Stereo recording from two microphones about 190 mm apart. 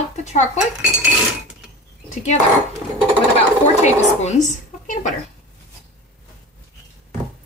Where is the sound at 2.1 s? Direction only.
40° left (ahead or behind).